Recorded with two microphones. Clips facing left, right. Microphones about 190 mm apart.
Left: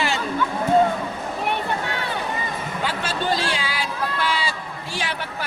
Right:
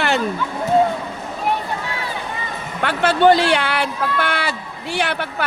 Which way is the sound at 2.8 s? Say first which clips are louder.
Right 12 dB; 65° right (ahead or behind).